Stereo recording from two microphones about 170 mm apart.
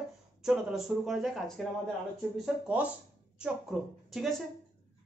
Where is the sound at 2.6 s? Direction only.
10° right (ahead or behind).